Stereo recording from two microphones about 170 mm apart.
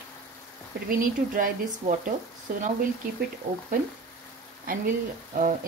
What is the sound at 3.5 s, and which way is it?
Speech, 45° right (ahead or behind).